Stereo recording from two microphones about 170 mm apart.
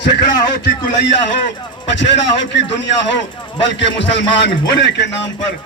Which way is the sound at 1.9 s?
90° left.